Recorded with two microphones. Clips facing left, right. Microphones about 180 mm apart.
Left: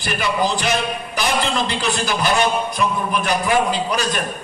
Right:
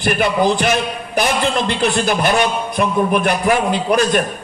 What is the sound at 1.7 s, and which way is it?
A man's voice, 55° right (ahead or behind).